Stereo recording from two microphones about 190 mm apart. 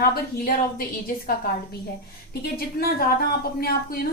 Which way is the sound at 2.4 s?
55° left (ahead or behind).